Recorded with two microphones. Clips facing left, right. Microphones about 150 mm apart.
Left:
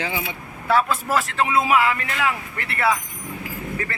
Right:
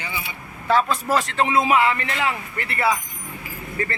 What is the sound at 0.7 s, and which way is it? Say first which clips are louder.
A man's voice: even; 5° left (ahead or behind).